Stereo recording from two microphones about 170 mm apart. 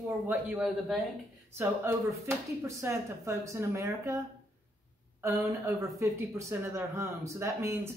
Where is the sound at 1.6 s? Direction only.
15° right (ahead or behind).